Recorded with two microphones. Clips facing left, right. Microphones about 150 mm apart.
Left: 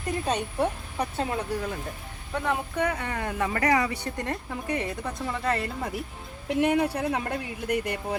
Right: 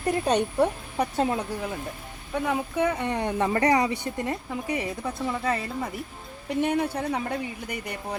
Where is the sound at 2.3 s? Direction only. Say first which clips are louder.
Right 2 dB; 10° right (ahead or behind).